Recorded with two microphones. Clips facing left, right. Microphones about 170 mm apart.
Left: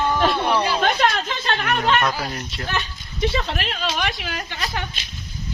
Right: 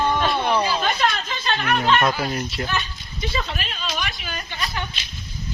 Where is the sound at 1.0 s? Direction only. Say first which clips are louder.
Left 2 dB; 45° left (ahead or behind).